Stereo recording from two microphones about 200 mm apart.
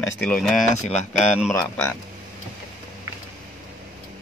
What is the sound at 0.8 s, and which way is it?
Speech, 35° left (ahead or behind).